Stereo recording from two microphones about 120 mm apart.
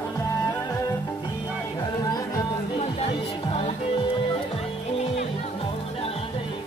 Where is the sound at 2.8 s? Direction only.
55° left (ahead or behind).